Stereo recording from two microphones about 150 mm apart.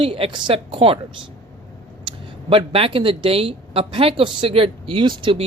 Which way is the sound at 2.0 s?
35° right (ahead or behind).